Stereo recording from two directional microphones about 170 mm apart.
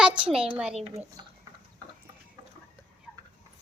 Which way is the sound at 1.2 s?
25° right (ahead or behind).